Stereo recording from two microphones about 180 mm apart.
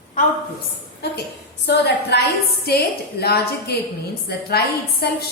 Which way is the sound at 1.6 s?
70° left (ahead or behind).